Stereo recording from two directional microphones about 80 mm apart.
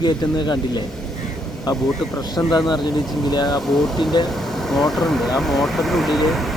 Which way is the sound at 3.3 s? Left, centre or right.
Left.